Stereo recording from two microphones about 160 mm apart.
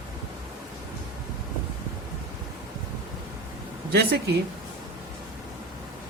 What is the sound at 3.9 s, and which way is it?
Speech, 85° right.